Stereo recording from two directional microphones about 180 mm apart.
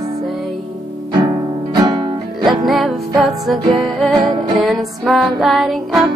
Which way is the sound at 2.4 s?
Centre (ahead or behind).